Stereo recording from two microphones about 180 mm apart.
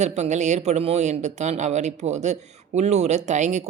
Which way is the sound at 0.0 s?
40° right (ahead or behind).